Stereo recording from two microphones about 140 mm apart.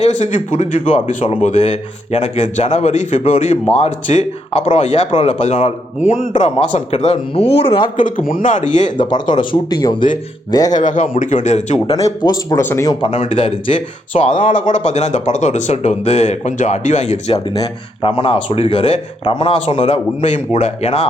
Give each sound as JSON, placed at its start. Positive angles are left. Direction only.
{"t": 0.0, "sound": "speech", "side_deg": 55}
{"t": 7.9, "sound": "speech", "side_deg": 75}
{"t": 8.4, "sound": "speech", "side_deg": 60}
{"t": 9.0, "sound": "speech", "side_deg": 30}
{"t": 10.8, "sound": "speech", "side_deg": 65}
{"t": 12.0, "sound": "speech", "side_deg": 30}
{"t": 12.6, "sound": "speech", "side_deg": 15}
{"t": 12.9, "sound": "speech", "side_deg": 35}